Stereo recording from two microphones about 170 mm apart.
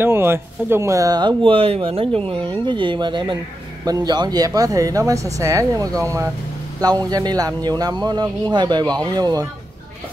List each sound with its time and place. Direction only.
0.0 s speech: 15° right (ahead or behind)